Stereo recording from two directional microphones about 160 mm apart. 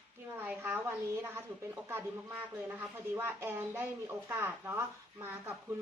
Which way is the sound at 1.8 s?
15° right (ahead or behind).